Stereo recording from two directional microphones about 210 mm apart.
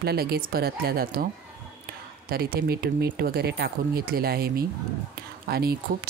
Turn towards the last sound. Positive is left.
turn(degrees=-45)  # may be behind; listen again after turning